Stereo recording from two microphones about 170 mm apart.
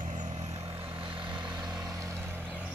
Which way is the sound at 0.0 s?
45° right (ahead or behind).